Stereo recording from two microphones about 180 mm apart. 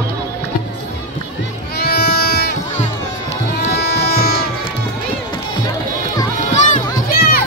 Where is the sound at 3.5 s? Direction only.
60° left (ahead or behind).